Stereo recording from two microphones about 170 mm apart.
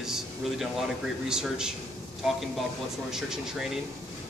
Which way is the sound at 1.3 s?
5° right (ahead or behind).